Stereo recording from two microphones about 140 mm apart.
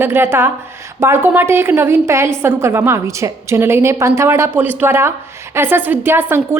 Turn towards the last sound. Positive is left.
turn(degrees=-15)  # may be behind; listen again after turning